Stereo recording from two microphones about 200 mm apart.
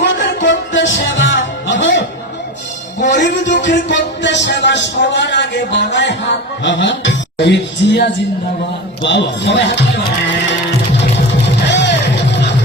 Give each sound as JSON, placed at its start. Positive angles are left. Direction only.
{"t": 0.4, "sound": "music", "side_deg": 65}
{"t": 3.0, "sound": "a man's voice", "side_deg": 60}
{"t": 11.4, "sound": "music", "side_deg": 60}